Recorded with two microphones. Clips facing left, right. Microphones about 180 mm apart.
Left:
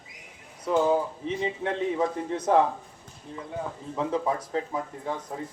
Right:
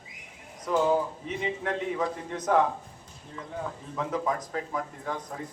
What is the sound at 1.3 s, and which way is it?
Speech, 30° left (ahead or behind).